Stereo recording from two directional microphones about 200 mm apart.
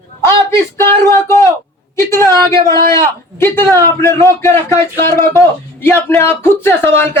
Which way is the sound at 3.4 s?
10° left (ahead or behind).